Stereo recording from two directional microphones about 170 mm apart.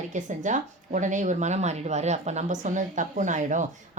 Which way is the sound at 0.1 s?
45° right (ahead or behind).